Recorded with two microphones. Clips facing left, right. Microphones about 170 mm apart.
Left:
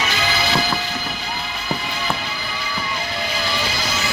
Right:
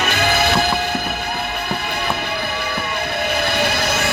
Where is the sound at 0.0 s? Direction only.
55° right (ahead or behind).